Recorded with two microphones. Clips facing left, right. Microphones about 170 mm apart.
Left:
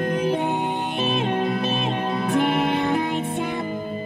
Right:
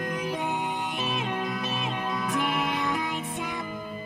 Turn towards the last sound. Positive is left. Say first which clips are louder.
# left 7 dB
turn(degrees=30)  # may be behind; listen again after turning